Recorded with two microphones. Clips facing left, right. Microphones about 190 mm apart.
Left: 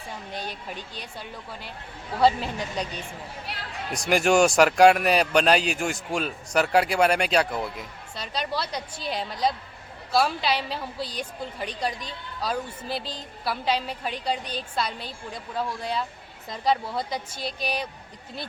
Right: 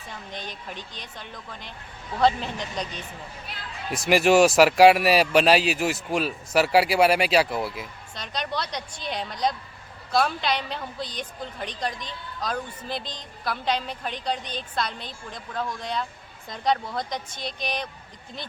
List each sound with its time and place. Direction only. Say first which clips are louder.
0.4 s a woman's voice: left 2 dB; 10° left (ahead or behind)
2.2 s a woman's voice: left 1 dB; 10° left (ahead or behind)
3.5 s a sound: left 4 dB; 75° left (ahead or behind)
3.9 s speech: right 2 dB; 5° right (ahead or behind)
8.1 s a woman's voice: left 1 dB; 5° left (ahead or behind)